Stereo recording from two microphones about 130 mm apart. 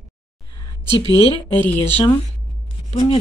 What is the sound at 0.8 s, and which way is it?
Speech, 35° right (ahead or behind).